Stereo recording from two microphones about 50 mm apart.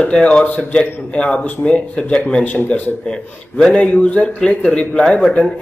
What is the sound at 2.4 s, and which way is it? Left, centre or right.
Speech, left.